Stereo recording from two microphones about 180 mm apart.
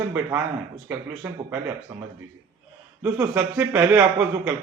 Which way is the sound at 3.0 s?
10° right (ahead or behind).